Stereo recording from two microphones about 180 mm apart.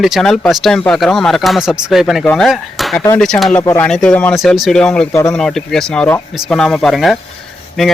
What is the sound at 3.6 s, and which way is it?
Speech, 15° left (ahead or behind).